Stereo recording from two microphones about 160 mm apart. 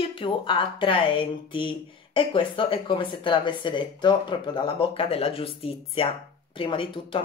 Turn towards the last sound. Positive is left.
turn(degrees=30)  # may be behind; listen again after turning